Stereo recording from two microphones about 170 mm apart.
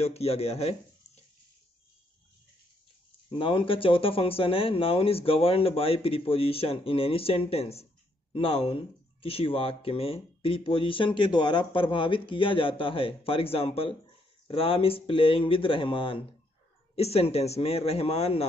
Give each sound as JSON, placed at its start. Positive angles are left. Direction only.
{"t": 0.0, "sound": "speech", "side_deg": 35}
{"t": 3.3, "sound": "speech", "side_deg": 30}